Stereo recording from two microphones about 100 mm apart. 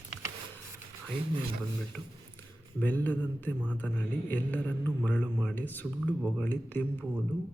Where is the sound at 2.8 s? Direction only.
15° left (ahead or behind).